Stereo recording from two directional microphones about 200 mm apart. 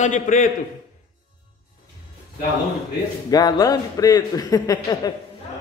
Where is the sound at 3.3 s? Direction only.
20° left (ahead or behind).